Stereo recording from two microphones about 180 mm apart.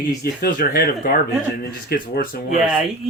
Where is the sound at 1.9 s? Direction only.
55° left (ahead or behind).